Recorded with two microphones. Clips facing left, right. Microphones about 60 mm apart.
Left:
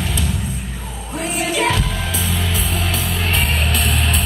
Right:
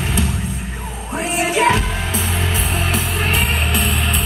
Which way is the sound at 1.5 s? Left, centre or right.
Right.